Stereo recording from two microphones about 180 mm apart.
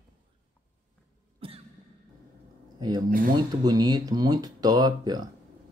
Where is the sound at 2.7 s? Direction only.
20° right (ahead or behind).